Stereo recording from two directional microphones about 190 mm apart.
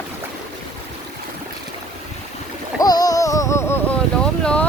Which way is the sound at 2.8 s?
20° left (ahead or behind).